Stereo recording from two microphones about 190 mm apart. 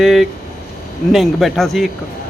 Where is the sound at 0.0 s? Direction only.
Centre (ahead or behind).